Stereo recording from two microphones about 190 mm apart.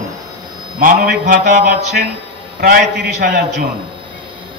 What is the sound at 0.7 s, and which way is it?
A man's voice, 45° right (ahead or behind).